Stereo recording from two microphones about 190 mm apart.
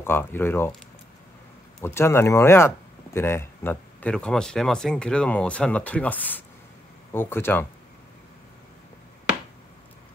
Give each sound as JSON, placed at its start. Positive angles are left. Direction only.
{"t": 0.0, "sound": "speech", "side_deg": 10}
{"t": 1.8, "sound": "speech", "side_deg": 15}